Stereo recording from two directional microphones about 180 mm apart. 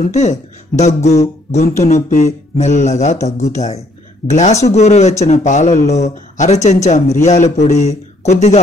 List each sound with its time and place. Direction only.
0.0 s speech: 40° left (ahead or behind)